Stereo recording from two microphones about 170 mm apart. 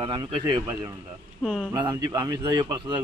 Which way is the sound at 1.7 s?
25° right (ahead or behind).